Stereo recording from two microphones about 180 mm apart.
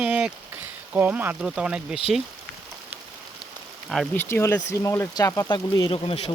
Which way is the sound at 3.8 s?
Centre (ahead or behind).